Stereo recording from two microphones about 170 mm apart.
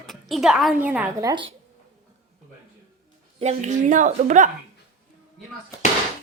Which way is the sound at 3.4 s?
45° right (ahead or behind).